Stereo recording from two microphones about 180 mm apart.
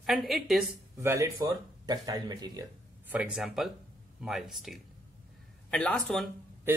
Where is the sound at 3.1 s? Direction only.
5° right (ahead or behind).